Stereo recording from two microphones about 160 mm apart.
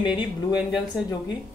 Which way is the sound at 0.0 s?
30° left (ahead or behind).